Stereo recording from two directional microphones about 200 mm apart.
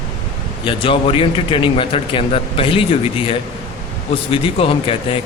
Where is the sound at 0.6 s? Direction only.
25° left (ahead or behind).